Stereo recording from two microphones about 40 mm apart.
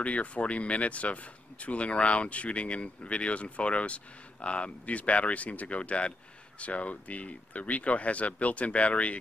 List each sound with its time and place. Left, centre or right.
0.0 s speech: left